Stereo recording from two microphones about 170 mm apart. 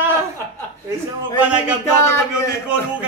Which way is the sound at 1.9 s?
15° left (ahead or behind).